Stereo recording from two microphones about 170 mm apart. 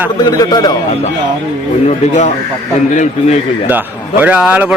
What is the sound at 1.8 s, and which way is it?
Speech, 40° left (ahead or behind).